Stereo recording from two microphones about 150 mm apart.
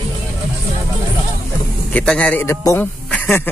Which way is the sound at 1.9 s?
10° left (ahead or behind).